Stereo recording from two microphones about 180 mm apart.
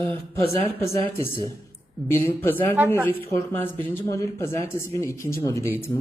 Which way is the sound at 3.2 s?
15° left (ahead or behind).